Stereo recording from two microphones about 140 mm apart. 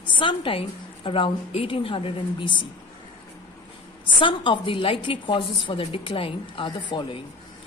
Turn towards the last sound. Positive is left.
turn(degrees=35)  # may be behind; listen again after turning